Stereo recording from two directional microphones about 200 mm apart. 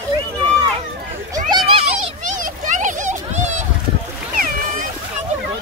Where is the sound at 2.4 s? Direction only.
40° right (ahead or behind).